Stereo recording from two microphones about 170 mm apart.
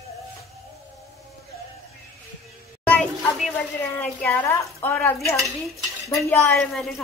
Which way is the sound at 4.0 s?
10° left (ahead or behind).